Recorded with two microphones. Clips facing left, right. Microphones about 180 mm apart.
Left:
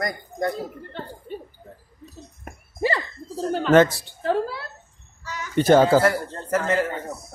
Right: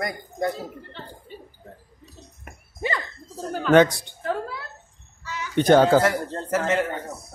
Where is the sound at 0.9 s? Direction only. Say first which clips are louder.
Left 6 dB; 50° left (ahead or behind).